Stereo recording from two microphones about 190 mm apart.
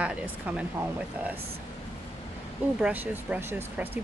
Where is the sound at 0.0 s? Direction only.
5° right (ahead or behind).